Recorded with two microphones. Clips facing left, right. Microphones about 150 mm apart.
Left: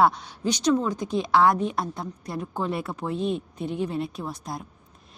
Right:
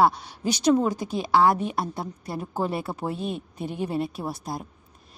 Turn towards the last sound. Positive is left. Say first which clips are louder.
# right 2 dB
turn(degrees=-5)  # may be behind; listen again after turning